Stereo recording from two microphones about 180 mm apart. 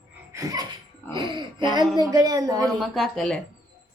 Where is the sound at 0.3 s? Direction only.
20° right (ahead or behind).